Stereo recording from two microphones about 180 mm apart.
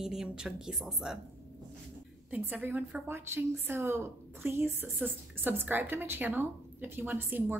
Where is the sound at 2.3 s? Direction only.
10° right (ahead or behind).